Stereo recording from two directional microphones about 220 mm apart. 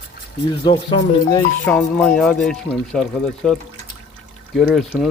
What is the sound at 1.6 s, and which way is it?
Speech, 5° left (ahead or behind).